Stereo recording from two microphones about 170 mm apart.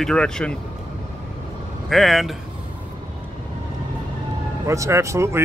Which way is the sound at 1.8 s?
Centre (ahead or behind).